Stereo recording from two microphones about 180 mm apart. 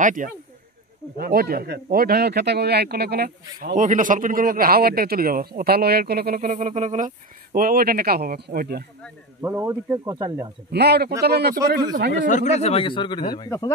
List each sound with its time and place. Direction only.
0.0 s speech: 45° right (ahead or behind)
7.5 s speech: 55° right (ahead or behind)
9.4 s speech: 10° right (ahead or behind)
10.7 s speech: 65° right (ahead or behind)
12.3 s speech: 40° left (ahead or behind); by 13.7 s 20° left (ahead or behind)